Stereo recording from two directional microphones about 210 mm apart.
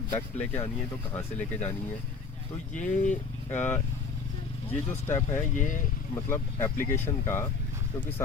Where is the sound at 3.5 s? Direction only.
10° left (ahead or behind).